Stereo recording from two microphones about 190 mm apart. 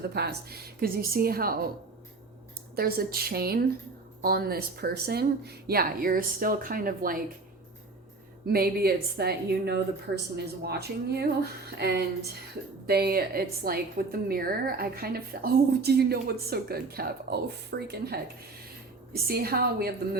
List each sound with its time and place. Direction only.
0.0 s a woman's voice: 60° right (ahead or behind)
2.7 s a woman's voice: 50° right (ahead or behind)
8.4 s a woman's voice: 55° right (ahead or behind)